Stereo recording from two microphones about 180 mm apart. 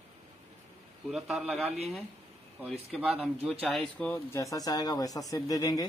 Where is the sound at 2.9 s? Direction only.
5° right (ahead or behind).